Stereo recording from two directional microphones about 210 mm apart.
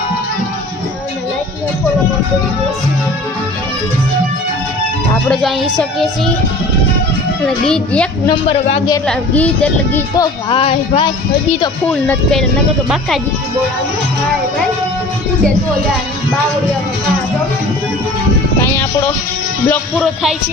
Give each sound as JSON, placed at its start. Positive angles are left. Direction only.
{"t": 5.3, "sound": "speech", "side_deg": 0}
{"t": 7.4, "sound": "speech", "side_deg": 5}
{"t": 8.3, "sound": "speech", "side_deg": 25}
{"t": 9.0, "sound": "speech", "side_deg": 5}
{"t": 10.2, "sound": "speech", "side_deg": 25}
{"t": 11.9, "sound": "speech", "side_deg": 5}
{"t": 19.6, "sound": "speech", "side_deg": 10}